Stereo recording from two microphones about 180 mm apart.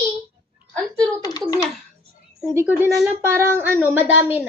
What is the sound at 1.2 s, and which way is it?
Speech, 20° left (ahead or behind).